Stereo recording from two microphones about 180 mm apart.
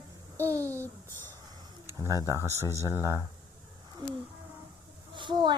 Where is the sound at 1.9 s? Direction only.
20° right (ahead or behind).